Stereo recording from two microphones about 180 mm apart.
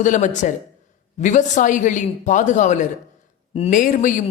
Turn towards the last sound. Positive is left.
turn(degrees=45)  # may be behind; listen again after turning